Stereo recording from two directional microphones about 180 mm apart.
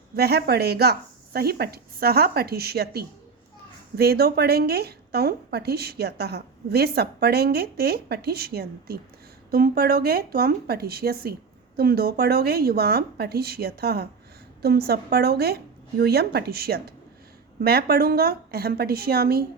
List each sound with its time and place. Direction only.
0.2 s speech: 65° right (ahead or behind)